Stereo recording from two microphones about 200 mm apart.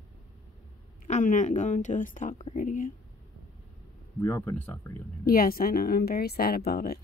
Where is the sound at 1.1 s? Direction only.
40° left (ahead or behind).